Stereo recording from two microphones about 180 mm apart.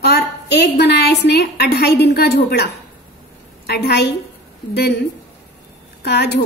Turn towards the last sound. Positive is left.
turn(degrees=70)  # may be behind; listen again after turning